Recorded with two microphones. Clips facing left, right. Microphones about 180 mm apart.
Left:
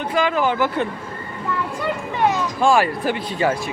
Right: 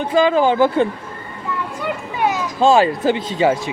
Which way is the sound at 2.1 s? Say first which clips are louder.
Even; 5° right (ahead or behind).